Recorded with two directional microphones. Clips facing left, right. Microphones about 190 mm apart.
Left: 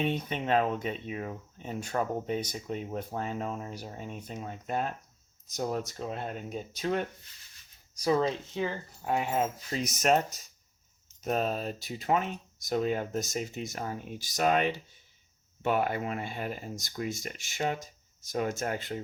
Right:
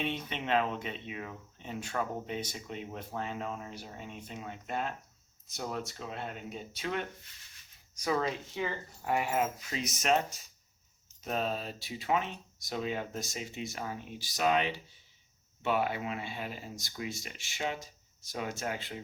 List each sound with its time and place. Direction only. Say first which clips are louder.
0.0 s speech: left 5 dB; 45° left (ahead or behind)
8.5 s speech: left 3 dB; 15° left (ahead or behind)
9.6 s speech: left 4 dB; 45° left (ahead or behind)
11.2 s speech: left 4 dB; 45° left (ahead or behind)